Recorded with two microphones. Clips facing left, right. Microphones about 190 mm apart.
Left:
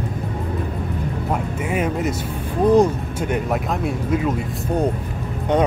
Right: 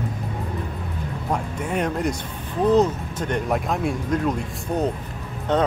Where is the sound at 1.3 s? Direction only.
5° left (ahead or behind).